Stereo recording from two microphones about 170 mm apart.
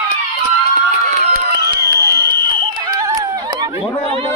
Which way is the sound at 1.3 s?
65° right (ahead or behind).